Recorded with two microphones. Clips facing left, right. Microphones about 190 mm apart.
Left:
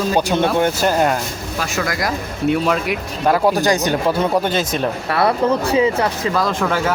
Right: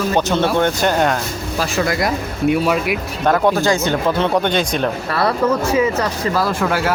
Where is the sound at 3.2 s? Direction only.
10° left (ahead or behind).